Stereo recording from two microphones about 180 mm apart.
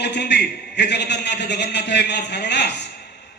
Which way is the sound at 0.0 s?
70° left (ahead or behind).